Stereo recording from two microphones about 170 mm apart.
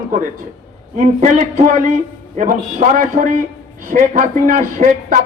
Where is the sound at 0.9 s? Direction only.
50° right (ahead or behind).